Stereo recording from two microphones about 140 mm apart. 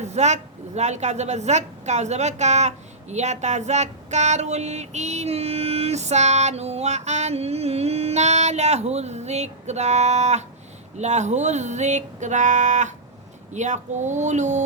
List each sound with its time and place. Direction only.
0.0 s a woman's voice: 55° right (ahead or behind)
10.9 s music: 55° right (ahead or behind)